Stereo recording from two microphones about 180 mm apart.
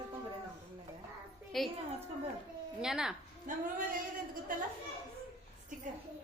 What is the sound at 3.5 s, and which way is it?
Singing, 45° right (ahead or behind).